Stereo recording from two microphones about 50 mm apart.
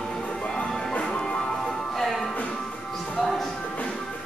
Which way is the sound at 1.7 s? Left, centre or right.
Centre.